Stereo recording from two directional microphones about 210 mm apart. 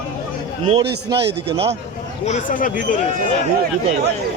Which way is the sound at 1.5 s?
25° right (ahead or behind).